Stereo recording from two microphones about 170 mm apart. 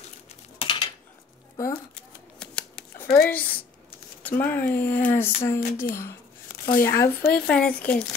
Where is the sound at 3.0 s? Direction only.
65° left (ahead or behind).